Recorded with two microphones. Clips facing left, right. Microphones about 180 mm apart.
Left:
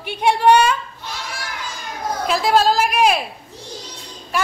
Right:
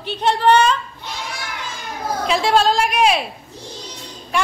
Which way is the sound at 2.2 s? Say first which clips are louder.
Even; centre (ahead or behind).